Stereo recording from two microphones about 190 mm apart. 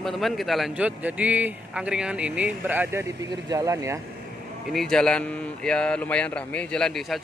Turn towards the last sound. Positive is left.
turn(degrees=0)  # may be behind; listen again after turning